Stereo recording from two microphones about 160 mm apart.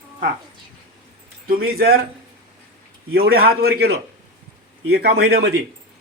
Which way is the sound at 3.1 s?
70° right (ahead or behind).